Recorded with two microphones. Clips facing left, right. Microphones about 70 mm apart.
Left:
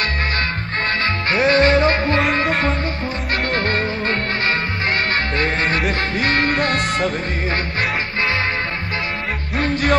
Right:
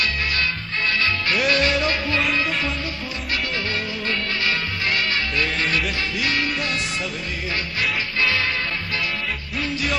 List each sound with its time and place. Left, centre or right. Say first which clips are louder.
1.0 s music: left 5 dB; left
2.1 s music: left 5 dB; left
9.6 s music: left 7 dB; left